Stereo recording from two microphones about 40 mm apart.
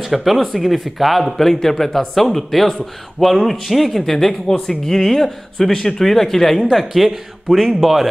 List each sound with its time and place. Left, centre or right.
0.0 s a man's voice: centre